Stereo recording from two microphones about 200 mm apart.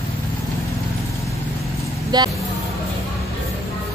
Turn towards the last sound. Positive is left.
turn(degrees=-20)  # may be behind; listen again after turning